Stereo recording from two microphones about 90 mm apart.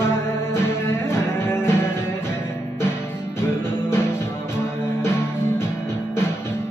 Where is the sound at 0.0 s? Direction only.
25° left (ahead or behind).